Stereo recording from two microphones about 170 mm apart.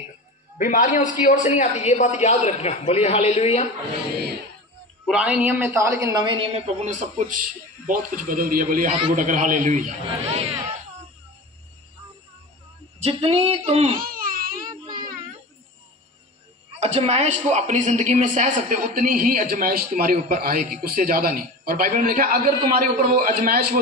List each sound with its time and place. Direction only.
0.6 s a woman's voice: 50° left (ahead or behind)
5.0 s a woman's voice: 5° right (ahead or behind); by 10.4 s 45° right (ahead or behind)
13.0 s a woman's voice: 40° right (ahead or behind)
13.9 s baby cry: 55° right (ahead or behind)
16.8 s a man's voice: 40° right (ahead or behind); by 23.8 s 55° right (ahead or behind)